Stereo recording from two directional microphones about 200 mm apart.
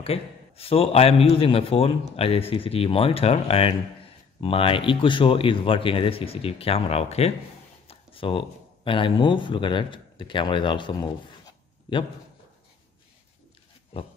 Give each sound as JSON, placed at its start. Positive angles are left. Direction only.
{"t": 0.0, "sound": "a man's voice", "side_deg": 30}